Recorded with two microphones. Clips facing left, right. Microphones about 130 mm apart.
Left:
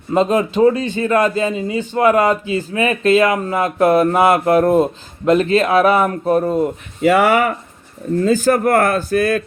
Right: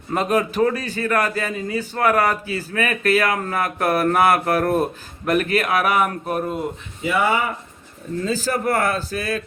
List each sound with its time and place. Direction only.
0.1 s a man's voice: 25° left (ahead or behind)
7.0 s speech: 85° left
8.4 s speech: 55° left (ahead or behind)